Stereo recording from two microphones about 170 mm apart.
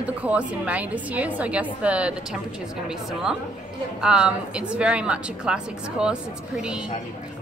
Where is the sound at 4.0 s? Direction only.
5° right (ahead or behind).